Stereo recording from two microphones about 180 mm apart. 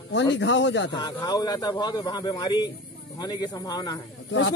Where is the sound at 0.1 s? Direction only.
80° left.